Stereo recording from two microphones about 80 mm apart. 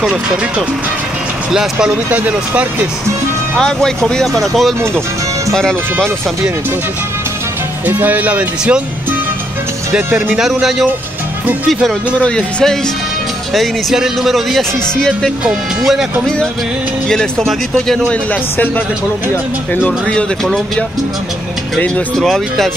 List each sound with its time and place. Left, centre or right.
0.0 s speech: centre
2.0 s speech: right
3.5 s speech: centre
7.8 s speech: right
10.3 s speech: centre
12.2 s speech: centre
13.5 s speech: centre
17.5 s speech: centre
19.7 s speech: centre
20.4 s speech: centre